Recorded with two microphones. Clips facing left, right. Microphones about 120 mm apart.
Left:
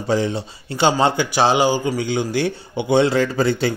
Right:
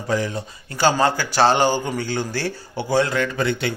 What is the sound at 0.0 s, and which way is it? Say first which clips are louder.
A man's voice: left 3 dB; 30° left (ahead or behind).